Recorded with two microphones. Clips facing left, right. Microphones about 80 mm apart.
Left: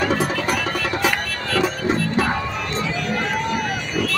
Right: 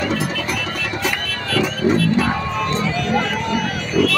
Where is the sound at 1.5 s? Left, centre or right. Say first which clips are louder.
Right 3 dB; left.